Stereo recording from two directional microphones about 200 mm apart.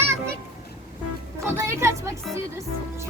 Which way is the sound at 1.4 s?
15° right (ahead or behind).